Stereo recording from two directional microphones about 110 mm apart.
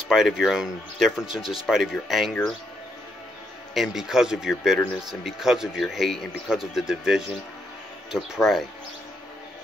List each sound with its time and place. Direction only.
0.1 s speech: 5° right (ahead or behind)
3.7 s speech: 5° right (ahead or behind)